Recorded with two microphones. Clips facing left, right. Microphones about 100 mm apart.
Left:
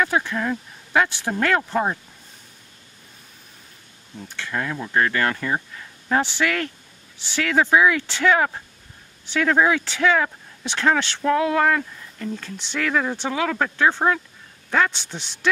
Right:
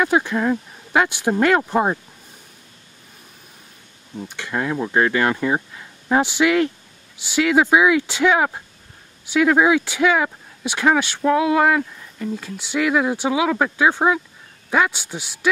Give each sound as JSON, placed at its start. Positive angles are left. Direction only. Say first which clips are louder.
{"t": 0.0, "sound": "speech", "louder": "right 4 dB", "side_deg": -15}
{"t": 4.2, "sound": "speech", "louder": "right 3 dB", "side_deg": -15}